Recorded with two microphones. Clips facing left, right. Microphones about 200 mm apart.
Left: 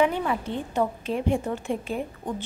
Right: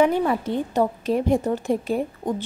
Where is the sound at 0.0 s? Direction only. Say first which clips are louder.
Right 4 dB; 40° right (ahead or behind).